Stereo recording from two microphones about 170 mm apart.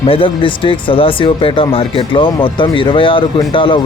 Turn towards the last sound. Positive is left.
turn(degrees=30)  # may be behind; listen again after turning